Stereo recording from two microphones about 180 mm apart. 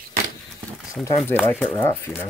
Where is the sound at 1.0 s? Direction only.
15° left (ahead or behind).